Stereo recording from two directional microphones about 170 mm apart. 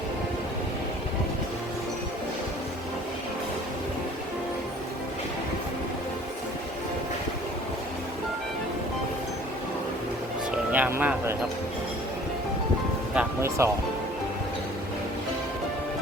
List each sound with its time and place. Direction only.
10.5 s music: 10° right (ahead or behind)
13.1 s music: 15° right (ahead or behind)